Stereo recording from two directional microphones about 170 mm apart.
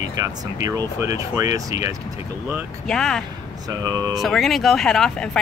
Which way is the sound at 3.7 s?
20° right (ahead or behind).